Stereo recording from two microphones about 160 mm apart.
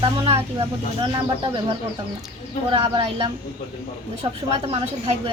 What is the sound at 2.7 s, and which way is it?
Speech, 35° right (ahead or behind).